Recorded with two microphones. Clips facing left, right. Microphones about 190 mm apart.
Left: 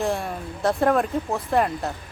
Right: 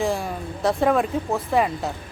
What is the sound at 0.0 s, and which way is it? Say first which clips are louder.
Speech: right 1 dB; centre (ahead or behind).